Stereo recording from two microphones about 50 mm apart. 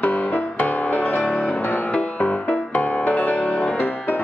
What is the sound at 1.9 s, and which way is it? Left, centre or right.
Music, left.